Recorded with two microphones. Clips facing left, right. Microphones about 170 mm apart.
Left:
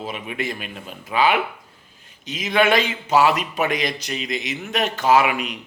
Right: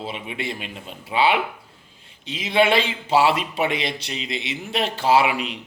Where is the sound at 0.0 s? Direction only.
30° right (ahead or behind).